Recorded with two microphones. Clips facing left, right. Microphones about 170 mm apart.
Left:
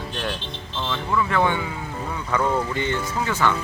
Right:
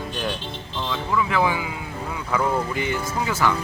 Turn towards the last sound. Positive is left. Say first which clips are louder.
# even
turn(degrees=-10)  # may be behind; listen again after turning